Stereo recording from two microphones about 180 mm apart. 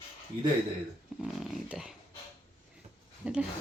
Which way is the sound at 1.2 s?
Centre (ahead or behind).